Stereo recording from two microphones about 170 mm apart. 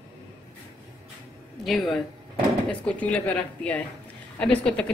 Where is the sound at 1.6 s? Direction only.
Centre (ahead or behind).